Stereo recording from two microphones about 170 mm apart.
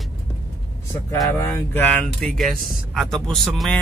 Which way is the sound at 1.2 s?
15° left (ahead or behind).